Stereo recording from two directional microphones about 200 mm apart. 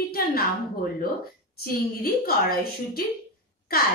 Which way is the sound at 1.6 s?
50° left (ahead or behind).